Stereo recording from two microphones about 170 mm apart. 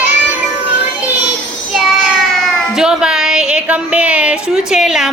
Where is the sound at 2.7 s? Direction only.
5° right (ahead or behind).